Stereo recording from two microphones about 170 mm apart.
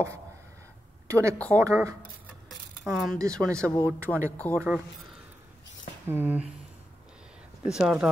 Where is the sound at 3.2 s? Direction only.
20° right (ahead or behind).